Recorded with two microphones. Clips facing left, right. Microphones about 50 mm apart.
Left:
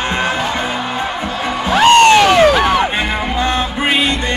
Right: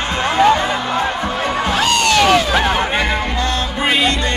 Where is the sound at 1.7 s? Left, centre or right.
Left.